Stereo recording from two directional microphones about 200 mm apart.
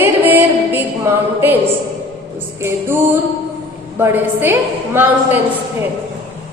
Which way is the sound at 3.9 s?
10° right (ahead or behind).